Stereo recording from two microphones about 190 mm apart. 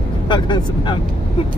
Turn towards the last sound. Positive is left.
turn(degrees=25)  # may be behind; listen again after turning